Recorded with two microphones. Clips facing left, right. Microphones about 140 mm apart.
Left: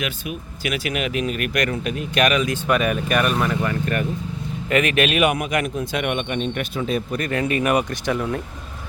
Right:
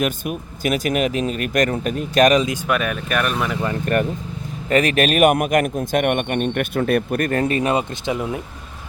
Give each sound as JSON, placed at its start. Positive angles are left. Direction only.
{"t": 0.0, "sound": "speech", "side_deg": -45}
{"t": 2.6, "sound": "speech", "side_deg": 0}
{"t": 4.7, "sound": "a man's voice", "side_deg": -35}